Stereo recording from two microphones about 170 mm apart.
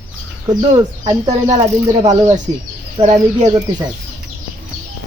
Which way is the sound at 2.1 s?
45° right (ahead or behind).